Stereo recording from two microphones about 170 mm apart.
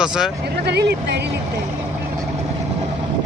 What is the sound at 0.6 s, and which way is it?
Speech, 85° right.